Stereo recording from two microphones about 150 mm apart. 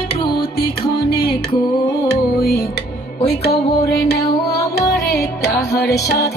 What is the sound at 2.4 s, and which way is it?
Music, 90° left.